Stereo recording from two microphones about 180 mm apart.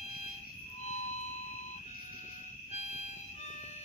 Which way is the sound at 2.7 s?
40° left (ahead or behind).